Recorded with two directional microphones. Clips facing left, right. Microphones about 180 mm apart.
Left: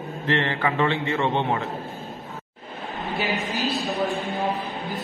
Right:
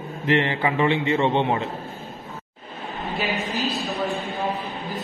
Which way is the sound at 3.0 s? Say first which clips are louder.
Even; centre (ahead or behind).